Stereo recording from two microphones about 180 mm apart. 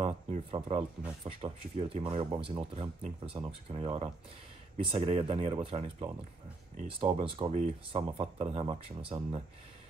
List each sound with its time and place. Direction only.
0.0 s speech: 35° right (ahead or behind)